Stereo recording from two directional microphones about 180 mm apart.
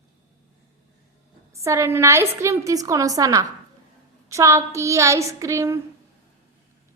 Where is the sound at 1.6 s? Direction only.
15° right (ahead or behind).